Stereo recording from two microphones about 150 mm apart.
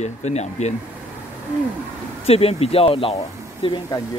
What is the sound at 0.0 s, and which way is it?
Speech, 50° left (ahead or behind).